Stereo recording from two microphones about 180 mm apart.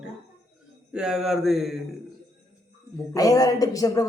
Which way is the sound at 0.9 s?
5° right (ahead or behind).